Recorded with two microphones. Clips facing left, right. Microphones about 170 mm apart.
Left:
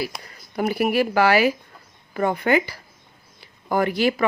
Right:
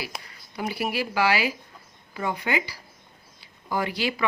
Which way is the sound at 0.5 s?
50° left (ahead or behind).